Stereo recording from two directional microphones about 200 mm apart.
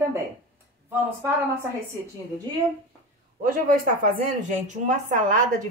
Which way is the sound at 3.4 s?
45° right (ahead or behind).